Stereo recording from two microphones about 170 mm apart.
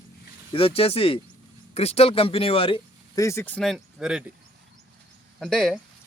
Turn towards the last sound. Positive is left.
turn(degrees=5)  # may be behind; listen again after turning